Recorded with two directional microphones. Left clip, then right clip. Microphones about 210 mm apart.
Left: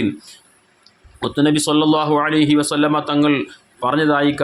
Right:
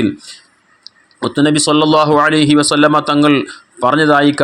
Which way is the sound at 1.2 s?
20° right (ahead or behind).